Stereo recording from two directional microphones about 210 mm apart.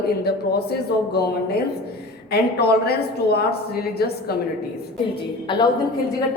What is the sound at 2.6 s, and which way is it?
A woman's voice, 50° left (ahead or behind).